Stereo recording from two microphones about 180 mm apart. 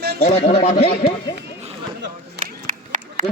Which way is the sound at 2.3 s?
45° right (ahead or behind).